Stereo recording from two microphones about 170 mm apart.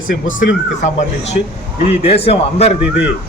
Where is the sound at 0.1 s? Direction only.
50° left (ahead or behind).